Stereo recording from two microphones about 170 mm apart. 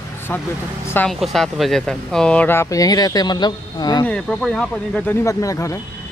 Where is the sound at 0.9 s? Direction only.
5° left (ahead or behind); by 4.0 s 25° left (ahead or behind).